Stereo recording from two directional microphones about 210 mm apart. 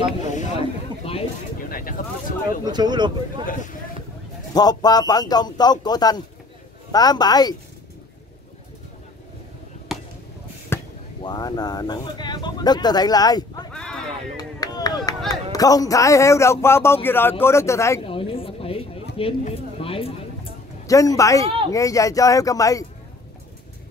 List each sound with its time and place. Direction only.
0.3 s a sound: 30° left (ahead or behind)
1.7 s speech: 40° left (ahead or behind)
2.6 s speech: 20° right (ahead or behind)
4.6 s speech: 20° left (ahead or behind)
10.7 s chop: 10° left (ahead or behind)
11.2 s speech: 20° left (ahead or behind)
13.7 s a sound: 5° left (ahead or behind)
14.3 s speech: 20° left (ahead or behind)
18.0 s a sound: 25° left (ahead or behind)
20.8 s speech: 15° left (ahead or behind)